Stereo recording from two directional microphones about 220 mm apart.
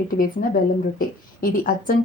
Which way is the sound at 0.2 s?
40° left (ahead or behind).